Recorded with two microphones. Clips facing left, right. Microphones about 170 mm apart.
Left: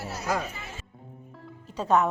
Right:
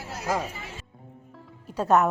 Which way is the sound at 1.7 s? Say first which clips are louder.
Right 2 dB; 5° right (ahead or behind).